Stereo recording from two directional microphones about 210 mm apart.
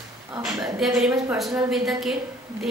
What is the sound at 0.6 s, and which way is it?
A woman's voice, centre (ahead or behind).